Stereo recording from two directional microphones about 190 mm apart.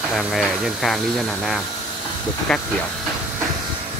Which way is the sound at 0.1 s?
Centre (ahead or behind).